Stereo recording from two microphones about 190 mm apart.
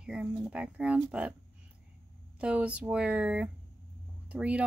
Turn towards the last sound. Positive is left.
turn(degrees=-5)  # may be behind; listen again after turning